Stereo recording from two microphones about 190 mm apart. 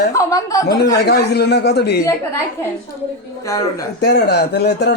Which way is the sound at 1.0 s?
60° left (ahead or behind).